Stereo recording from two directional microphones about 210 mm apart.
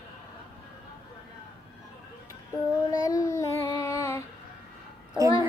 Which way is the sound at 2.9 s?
15° left (ahead or behind).